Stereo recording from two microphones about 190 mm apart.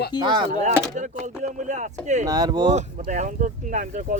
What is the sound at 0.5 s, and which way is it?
Speech, 40° right (ahead or behind).